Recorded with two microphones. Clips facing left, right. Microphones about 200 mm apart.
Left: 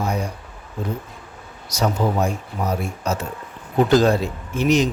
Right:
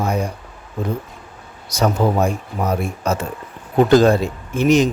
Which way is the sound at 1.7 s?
55° right (ahead or behind).